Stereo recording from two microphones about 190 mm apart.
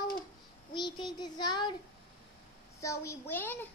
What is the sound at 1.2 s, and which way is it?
Speech, 20° left (ahead or behind).